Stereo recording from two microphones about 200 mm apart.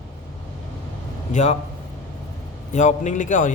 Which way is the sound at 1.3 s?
35° left (ahead or behind).